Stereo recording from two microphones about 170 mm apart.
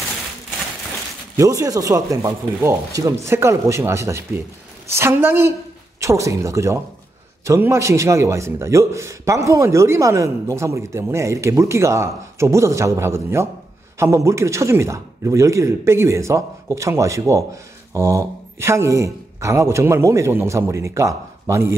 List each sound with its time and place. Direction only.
1.3 s a man's voice: 20° right (ahead or behind)